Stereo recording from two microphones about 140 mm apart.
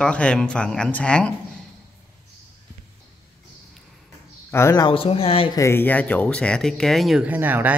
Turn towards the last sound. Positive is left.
turn(degrees=-15)  # may be behind; listen again after turning